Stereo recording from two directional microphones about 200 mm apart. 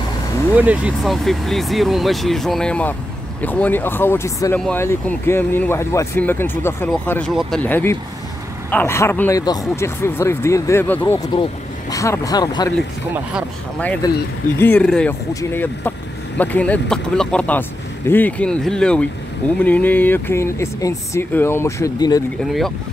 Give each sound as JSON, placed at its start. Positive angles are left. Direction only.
{"t": 0.6, "sound": "speech", "side_deg": -5}
{"t": 13.1, "sound": "speech", "side_deg": -5}
{"t": 14.0, "sound": "speech", "side_deg": 20}
{"t": 14.6, "sound": "speech", "side_deg": 5}
{"t": 22.4, "sound": "speech", "side_deg": 0}